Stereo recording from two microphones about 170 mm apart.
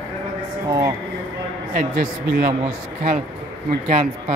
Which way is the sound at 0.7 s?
20° right (ahead or behind).